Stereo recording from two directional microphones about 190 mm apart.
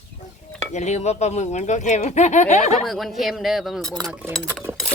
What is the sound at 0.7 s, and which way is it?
Speech, 40° left (ahead or behind).